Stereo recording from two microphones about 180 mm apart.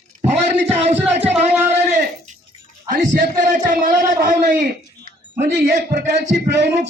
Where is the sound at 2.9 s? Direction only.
45° right (ahead or behind).